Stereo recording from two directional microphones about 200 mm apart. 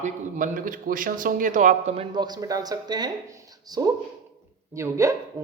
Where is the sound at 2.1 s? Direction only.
20° right (ahead or behind).